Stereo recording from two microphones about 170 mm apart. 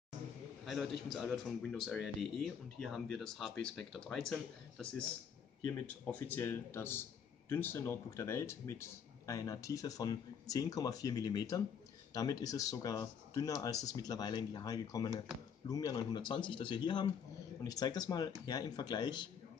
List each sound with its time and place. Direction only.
0.7 s a man's voice: centre (ahead or behind); by 19.2 s 25° left (ahead or behind)